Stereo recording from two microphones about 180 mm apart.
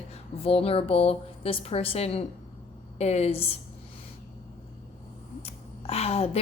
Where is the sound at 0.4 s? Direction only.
30° left (ahead or behind).